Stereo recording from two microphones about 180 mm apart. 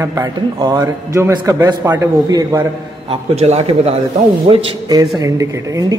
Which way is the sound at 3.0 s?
35° right (ahead or behind).